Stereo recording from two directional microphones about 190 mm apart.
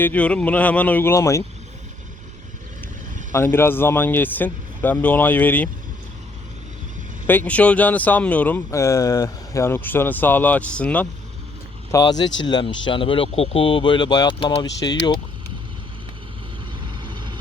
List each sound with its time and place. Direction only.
0.0 s speech: 10° left (ahead or behind)
3.3 s speech: 10° left (ahead or behind)
7.3 s speech: 10° left (ahead or behind)
11.9 s speech: 20° left (ahead or behind)
16.8 s vehicle: 25° right (ahead or behind)